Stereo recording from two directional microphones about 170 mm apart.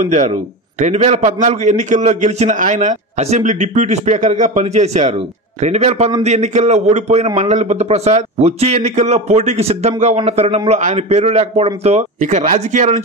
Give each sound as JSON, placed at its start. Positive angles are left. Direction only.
{"t": 0.0, "sound": "a man's voice", "side_deg": -45}